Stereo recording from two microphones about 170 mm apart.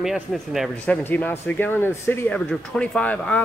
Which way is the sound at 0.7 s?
10° left (ahead or behind).